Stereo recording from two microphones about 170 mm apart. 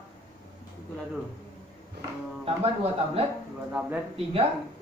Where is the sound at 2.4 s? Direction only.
35° right (ahead or behind).